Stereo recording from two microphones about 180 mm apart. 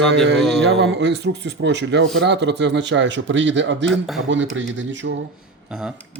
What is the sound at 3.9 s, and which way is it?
Speech, centre (ahead or behind).